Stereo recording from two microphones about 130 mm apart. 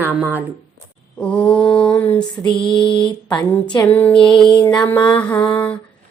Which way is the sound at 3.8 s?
15° left (ahead or behind).